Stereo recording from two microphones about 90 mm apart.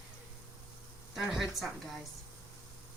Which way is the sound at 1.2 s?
5° right (ahead or behind).